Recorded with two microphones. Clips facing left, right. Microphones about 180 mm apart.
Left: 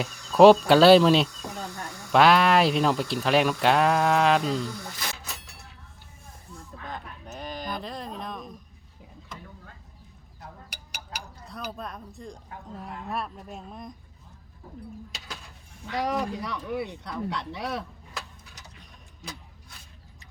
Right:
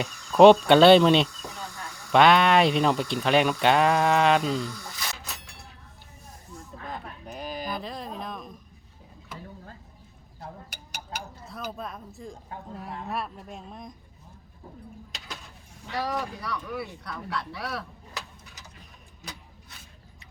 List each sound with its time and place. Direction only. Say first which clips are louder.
0.0 s speech: even; centre (ahead or behind)
6.8 s a sound: right 1 dB; 5° right (ahead or behind)
11.4 s speech: left 1 dB; centre (ahead or behind)
15.9 s speech: left 3 dB; 20° left (ahead or behind)